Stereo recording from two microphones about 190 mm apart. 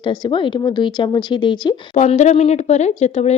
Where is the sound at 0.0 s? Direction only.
25° left (ahead or behind).